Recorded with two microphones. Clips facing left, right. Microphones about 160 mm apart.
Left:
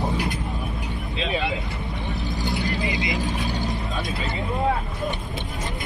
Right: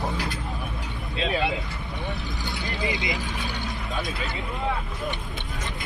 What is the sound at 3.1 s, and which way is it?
Vehicle, 45° left (ahead or behind).